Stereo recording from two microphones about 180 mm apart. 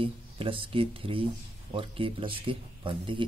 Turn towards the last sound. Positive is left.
turn(degrees=-30)  # may be behind; listen again after turning